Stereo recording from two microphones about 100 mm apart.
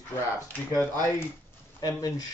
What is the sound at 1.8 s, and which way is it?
Speech, 35° left (ahead or behind).